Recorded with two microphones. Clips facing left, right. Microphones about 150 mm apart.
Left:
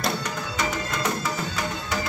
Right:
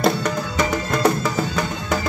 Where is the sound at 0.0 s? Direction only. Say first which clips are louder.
Right 8 dB; 50° right (ahead or behind).